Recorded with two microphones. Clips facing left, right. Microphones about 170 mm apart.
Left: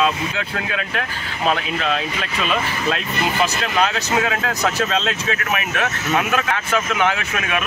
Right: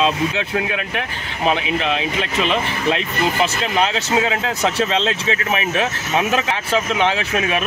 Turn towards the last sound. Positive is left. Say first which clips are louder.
# right 3 dB
turn(degrees=-30)  # may be behind; listen again after turning